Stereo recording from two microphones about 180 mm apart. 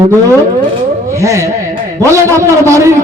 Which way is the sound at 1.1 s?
15° right (ahead or behind).